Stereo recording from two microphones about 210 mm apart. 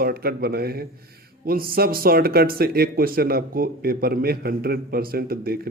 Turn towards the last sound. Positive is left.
turn(degrees=-45)  # may be behind; listen again after turning